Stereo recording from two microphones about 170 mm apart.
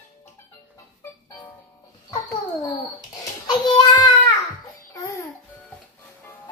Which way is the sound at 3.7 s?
25° left (ahead or behind).